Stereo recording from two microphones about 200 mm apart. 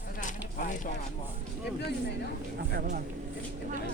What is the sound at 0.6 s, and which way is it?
Speech, 40° left (ahead or behind).